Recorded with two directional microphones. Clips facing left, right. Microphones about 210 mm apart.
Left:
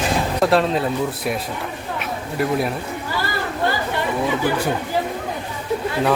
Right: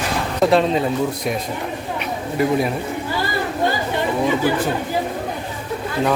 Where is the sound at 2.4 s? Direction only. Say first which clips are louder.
Right 2 dB; centre (ahead or behind).